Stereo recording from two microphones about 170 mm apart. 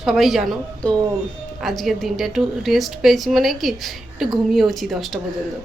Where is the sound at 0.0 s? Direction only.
Centre (ahead or behind).